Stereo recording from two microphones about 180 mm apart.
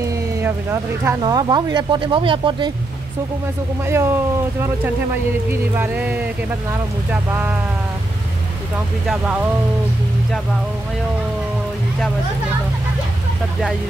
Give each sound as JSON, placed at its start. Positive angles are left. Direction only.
{"t": 0.1, "sound": "speech", "side_deg": -15}
{"t": 1.2, "sound": "speech", "side_deg": -25}
{"t": 3.8, "sound": "speech", "side_deg": -15}
{"t": 9.0, "sound": "speech", "side_deg": -5}